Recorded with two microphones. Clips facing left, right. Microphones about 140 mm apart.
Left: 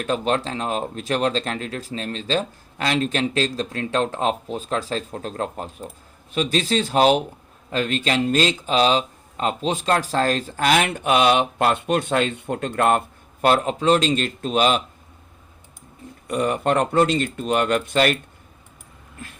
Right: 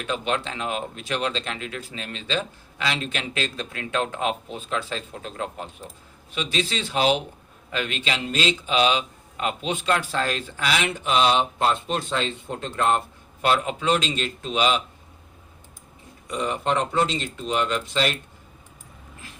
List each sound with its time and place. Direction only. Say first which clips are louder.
0.0 s speech: left 4 dB; 40° left (ahead or behind)
13.4 s speech: left 4 dB; 45° left (ahead or behind)
16.2 s speech: left 5 dB; 55° left (ahead or behind)